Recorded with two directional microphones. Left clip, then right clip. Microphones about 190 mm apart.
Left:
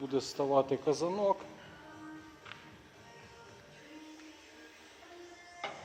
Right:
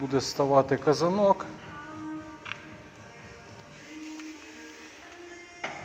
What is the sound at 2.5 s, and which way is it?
Music, 45° right (ahead or behind).